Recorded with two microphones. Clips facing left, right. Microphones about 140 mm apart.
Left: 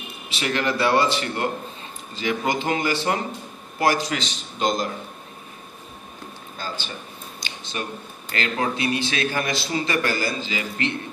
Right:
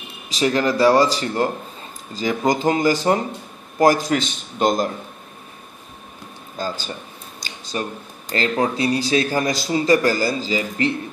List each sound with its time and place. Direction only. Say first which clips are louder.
0.3 s a man's voice: right 5 dB; 35° right (ahead or behind)
6.6 s a man's voice: right 7 dB; 40° right (ahead or behind)
7.4 s a sound: right 5 dB; 40° right (ahead or behind)
8.3 s a man's voice: right 5 dB; 35° right (ahead or behind)